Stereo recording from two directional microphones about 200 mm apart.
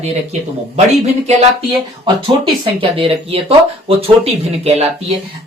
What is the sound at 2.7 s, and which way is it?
Speech, 25° right (ahead or behind).